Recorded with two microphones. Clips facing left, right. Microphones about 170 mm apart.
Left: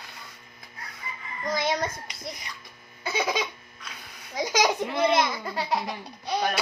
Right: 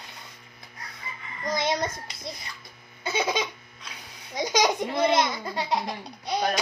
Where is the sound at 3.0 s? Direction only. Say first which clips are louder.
Right 1 dB; 25° right (ahead or behind).